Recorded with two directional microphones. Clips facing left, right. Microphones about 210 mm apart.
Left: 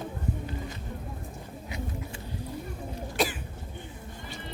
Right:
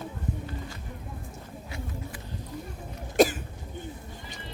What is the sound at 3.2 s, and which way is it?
Cough, 45° right (ahead or behind).